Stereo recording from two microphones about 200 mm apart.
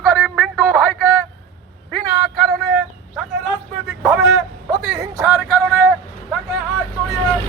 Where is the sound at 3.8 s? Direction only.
5° right (ahead or behind).